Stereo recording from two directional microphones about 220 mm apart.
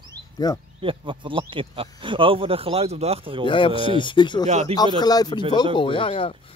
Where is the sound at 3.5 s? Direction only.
25° left (ahead or behind).